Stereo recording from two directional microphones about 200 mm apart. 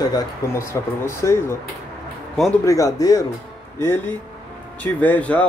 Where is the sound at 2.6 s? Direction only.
15° left (ahead or behind).